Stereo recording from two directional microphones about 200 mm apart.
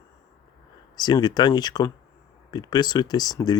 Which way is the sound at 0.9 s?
20° left (ahead or behind).